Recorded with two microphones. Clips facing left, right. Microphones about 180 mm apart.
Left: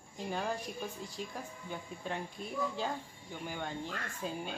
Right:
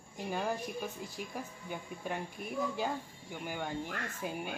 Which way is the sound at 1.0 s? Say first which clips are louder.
Right 1 dB; 10° right (ahead or behind).